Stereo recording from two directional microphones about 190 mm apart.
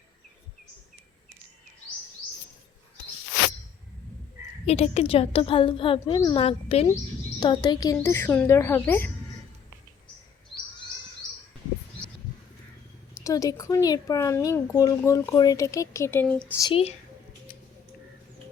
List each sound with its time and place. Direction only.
4.6 s speech: 35° left (ahead or behind)
7.3 s speech: 20° left (ahead or behind)
13.1 s speech: 15° left (ahead or behind)